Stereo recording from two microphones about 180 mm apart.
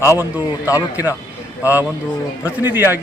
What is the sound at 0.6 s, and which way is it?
Speech, 15° left (ahead or behind).